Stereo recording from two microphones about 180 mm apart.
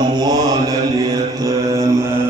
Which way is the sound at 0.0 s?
20° right (ahead or behind).